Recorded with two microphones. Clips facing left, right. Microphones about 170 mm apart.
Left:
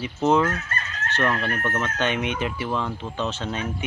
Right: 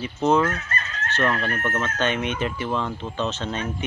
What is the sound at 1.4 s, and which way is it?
Speech, 15° right (ahead or behind).